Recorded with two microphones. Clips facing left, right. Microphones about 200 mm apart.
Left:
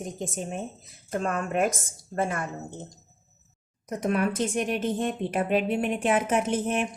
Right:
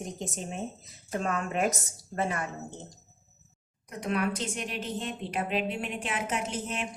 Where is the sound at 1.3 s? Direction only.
50° left (ahead or behind).